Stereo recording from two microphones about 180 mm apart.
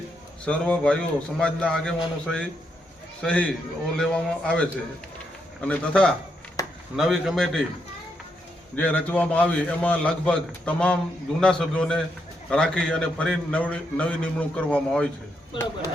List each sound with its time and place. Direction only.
0.4 s a man's voice: 5° left (ahead or behind)
6.6 s a sound: 20° left (ahead or behind)
6.9 s a man's voice: centre (ahead or behind)
8.7 s a man's voice: 10° left (ahead or behind)